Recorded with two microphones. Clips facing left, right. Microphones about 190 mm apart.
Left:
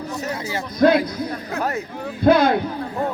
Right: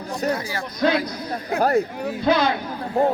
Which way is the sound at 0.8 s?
50° left (ahead or behind).